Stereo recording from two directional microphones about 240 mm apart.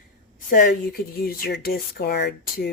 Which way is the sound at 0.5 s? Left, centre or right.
Left.